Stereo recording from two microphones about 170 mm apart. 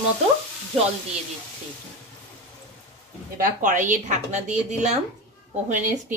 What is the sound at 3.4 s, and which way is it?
A woman's voice, 50° right (ahead or behind).